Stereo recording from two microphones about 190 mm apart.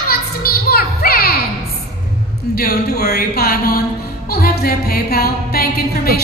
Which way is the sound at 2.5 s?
55° left (ahead or behind).